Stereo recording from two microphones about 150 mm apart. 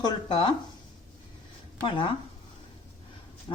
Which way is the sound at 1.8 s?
35° left (ahead or behind).